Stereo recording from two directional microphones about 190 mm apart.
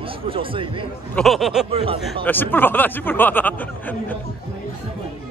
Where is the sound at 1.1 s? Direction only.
Centre (ahead or behind).